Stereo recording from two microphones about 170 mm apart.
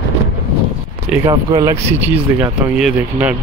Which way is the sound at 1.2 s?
25° right (ahead or behind).